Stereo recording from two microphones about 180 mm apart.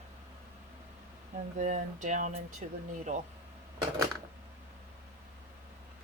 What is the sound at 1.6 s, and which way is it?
Speech, 45° right (ahead or behind).